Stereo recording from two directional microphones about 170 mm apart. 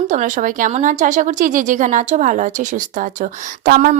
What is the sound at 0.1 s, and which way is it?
A woman's voice, 45° right (ahead or behind).